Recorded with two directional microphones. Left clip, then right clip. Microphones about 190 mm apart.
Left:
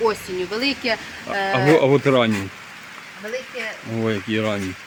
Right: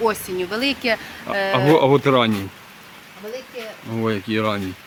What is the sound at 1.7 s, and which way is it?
Speech, centre (ahead or behind).